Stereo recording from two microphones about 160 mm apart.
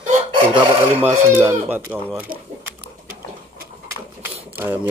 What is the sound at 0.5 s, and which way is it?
Filing, 10° right (ahead or behind).